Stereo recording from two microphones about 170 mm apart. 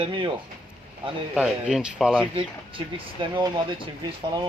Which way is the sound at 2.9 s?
30° right (ahead or behind).